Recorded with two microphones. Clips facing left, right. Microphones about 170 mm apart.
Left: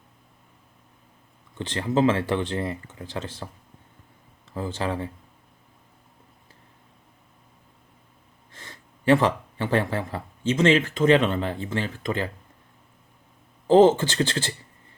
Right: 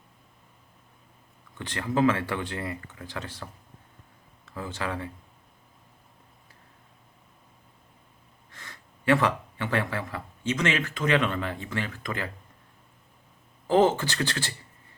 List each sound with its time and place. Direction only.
1.5 s speech: 25° left (ahead or behind)
8.5 s speech: 30° left (ahead or behind)
13.7 s speech: 25° left (ahead or behind)